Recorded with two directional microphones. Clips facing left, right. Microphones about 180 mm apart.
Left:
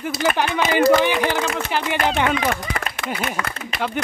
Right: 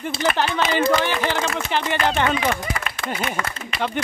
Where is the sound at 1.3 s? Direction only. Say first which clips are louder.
Left 1 dB; 10° left (ahead or behind).